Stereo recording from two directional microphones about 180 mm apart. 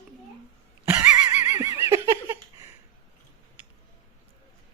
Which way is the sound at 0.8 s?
10° right (ahead or behind).